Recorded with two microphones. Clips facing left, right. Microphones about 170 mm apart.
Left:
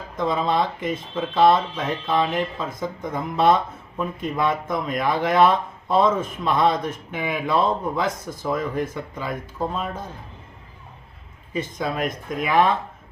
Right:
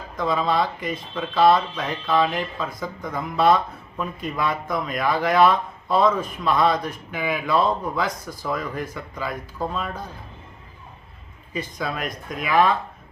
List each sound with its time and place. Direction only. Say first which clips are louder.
0.2 s speech: even; 25° left (ahead or behind)
11.5 s speech: left 3 dB; 25° left (ahead or behind)